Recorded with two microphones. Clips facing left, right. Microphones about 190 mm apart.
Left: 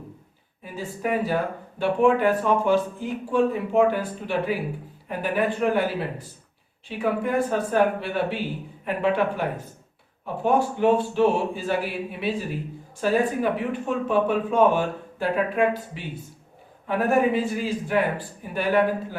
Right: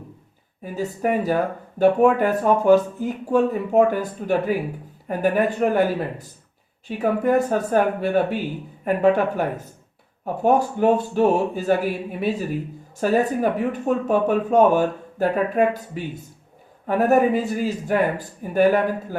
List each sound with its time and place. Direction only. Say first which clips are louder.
0.6 s speech: right 5 dB; 45° right (ahead or behind)